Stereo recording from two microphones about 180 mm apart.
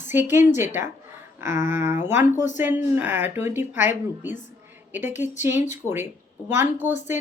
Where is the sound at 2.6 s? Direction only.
10° right (ahead or behind).